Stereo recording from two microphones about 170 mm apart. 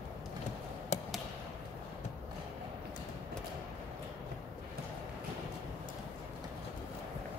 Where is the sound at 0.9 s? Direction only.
40° left (ahead or behind).